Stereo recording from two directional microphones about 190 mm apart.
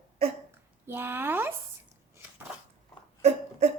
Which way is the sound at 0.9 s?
10° right (ahead or behind).